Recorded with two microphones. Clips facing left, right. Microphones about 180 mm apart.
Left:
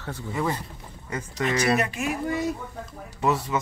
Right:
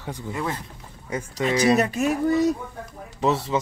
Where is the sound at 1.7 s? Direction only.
40° right (ahead or behind).